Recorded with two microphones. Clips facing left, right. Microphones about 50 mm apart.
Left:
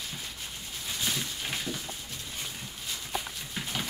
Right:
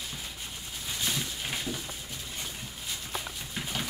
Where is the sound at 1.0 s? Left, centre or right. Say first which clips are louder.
Even; centre.